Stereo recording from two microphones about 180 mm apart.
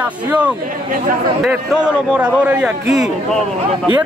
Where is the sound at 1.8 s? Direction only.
5° right (ahead or behind).